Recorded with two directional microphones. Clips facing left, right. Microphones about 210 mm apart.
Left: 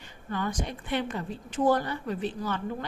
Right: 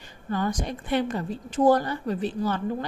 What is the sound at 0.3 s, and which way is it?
A woman's voice, 40° right (ahead or behind).